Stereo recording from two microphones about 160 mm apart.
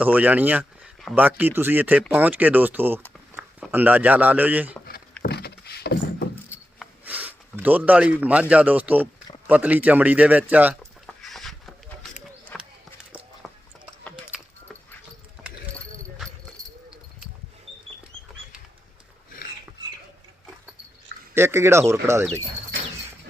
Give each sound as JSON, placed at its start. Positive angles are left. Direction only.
{"t": 0.0, "sound": "speech", "side_deg": -10}
{"t": 5.2, "sound": "rowboat", "side_deg": 85}
{"t": 7.0, "sound": "speech", "side_deg": -10}
{"t": 11.2, "sound": "chicken", "side_deg": 0}
{"t": 12.5, "sound": "run", "side_deg": 10}
{"t": 13.4, "sound": "a sound", "side_deg": 0}
{"t": 21.3, "sound": "speech", "side_deg": -15}